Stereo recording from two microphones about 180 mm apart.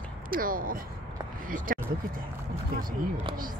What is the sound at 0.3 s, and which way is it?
Speech, 50° right (ahead or behind).